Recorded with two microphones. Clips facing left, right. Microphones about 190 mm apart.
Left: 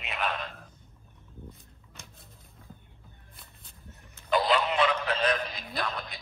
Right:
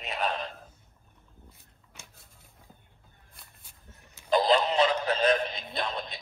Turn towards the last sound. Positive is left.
turn(degrees=-25)  # may be behind; listen again after turning